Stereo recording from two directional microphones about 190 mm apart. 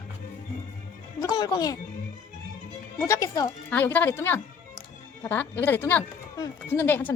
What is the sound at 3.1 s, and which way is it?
Speech, 15° left (ahead or behind).